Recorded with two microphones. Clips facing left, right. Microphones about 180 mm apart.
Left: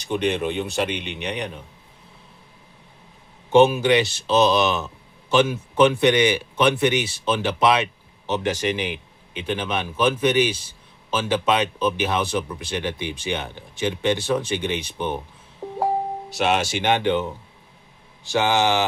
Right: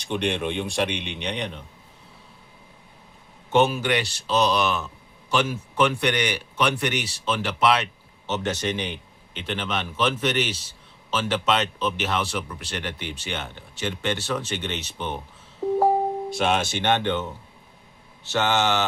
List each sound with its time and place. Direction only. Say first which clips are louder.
0.0 s speech: left 3 dB; 5° left (ahead or behind)
3.5 s speech: left 5 dB; 15° left (ahead or behind)
8.6 s a man's voice: left 3 dB; 5° left (ahead or behind)
16.4 s a man's voice: left 3 dB; 5° left (ahead or behind)